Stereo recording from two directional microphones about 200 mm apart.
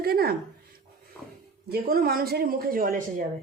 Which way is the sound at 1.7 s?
50° right (ahead or behind).